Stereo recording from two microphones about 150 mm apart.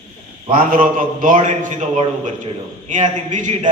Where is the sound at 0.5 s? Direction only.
65° right (ahead or behind).